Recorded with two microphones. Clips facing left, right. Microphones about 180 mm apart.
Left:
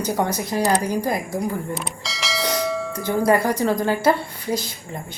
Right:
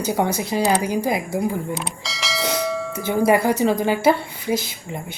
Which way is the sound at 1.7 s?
Centre (ahead or behind).